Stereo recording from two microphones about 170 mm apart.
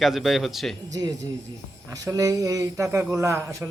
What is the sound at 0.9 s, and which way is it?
A man's voice, 20° right (ahead or behind).